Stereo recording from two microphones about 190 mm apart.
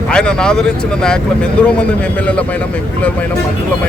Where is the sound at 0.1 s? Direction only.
5° left (ahead or behind).